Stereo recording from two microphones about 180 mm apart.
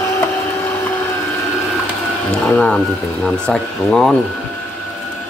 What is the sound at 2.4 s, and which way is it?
Speech, 5° left (ahead or behind).